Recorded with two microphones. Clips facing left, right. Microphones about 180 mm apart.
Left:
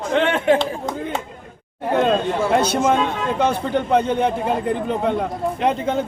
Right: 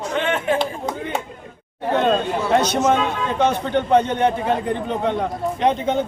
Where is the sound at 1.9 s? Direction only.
5° left (ahead or behind).